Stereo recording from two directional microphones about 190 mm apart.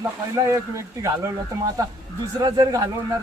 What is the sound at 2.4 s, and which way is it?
Speech, 20° right (ahead or behind).